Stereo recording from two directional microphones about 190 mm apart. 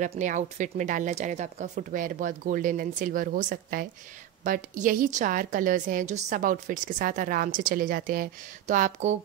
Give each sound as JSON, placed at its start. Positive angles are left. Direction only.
{"t": 0.0, "sound": "a woman's voice", "side_deg": -40}